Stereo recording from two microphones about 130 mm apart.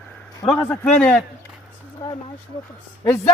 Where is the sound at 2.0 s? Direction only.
25° left (ahead or behind).